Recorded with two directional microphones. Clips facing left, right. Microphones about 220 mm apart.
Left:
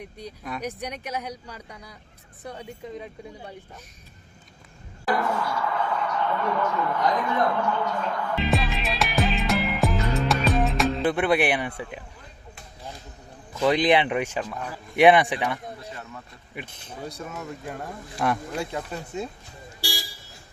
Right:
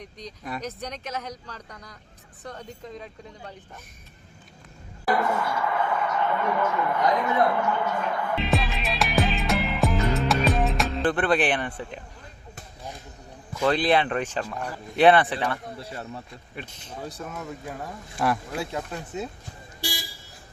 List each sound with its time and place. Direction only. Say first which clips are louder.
0.0 s speech: left 1 dB; 10° left (ahead or behind)
5.1 s a sound: right 1 dB; 5° right (ahead or behind)
7.3 s music: right 1 dB; 10° right (ahead or behind)
11.1 s speech: left 1 dB; 10° left (ahead or behind)
13.6 s speech: left 2 dB; 15° left (ahead or behind)
15.8 s speech: right 3 dB; 30° right (ahead or behind)
16.6 s speech: left 1 dB; 15° left (ahead or behind)
17.0 s speech: even; centre (ahead or behind)